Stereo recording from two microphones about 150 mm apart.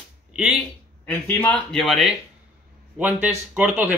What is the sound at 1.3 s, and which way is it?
Speech, 15° left (ahead or behind).